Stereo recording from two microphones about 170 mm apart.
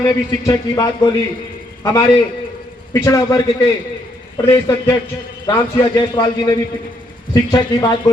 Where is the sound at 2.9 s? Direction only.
20° left (ahead or behind).